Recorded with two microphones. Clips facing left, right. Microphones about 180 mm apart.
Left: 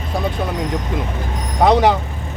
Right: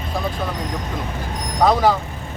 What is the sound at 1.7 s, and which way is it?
Speech, 20° left (ahead or behind).